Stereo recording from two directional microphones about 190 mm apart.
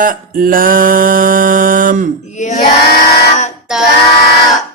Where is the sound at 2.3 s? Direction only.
40° left (ahead or behind).